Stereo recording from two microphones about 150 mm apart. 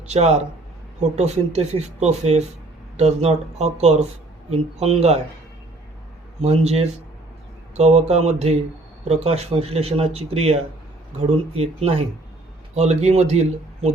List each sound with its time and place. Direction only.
0.1 s speech: 45° right (ahead or behind)
6.4 s speech: 45° right (ahead or behind)